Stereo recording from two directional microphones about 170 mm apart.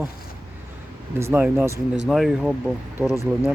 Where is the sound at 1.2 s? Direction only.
15° right (ahead or behind).